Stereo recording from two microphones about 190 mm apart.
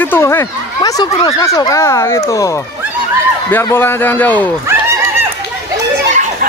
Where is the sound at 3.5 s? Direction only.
10° left (ahead or behind).